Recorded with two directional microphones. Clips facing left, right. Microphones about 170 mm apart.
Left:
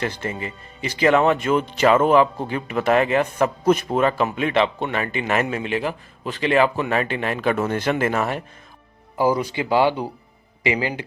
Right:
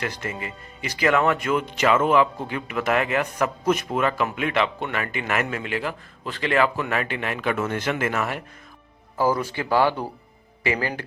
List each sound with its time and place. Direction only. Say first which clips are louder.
0.0 s speech: left 4 dB; 30° left (ahead or behind)
9.1 s speech: left 3 dB; 15° left (ahead or behind)